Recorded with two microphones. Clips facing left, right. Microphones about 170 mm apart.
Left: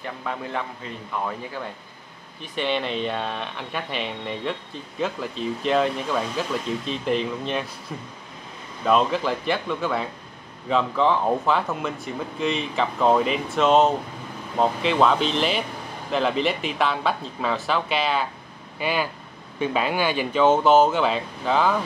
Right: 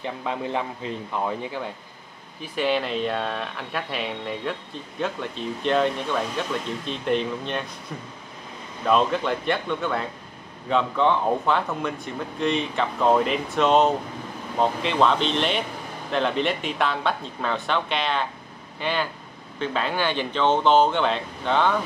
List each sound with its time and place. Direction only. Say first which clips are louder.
0.0 s a man's voice: right 2 dB; 15° right (ahead or behind)
2.4 s speech: right 1 dB; 5° right (ahead or behind)
8.8 s speech: left 1 dB; centre (ahead or behind)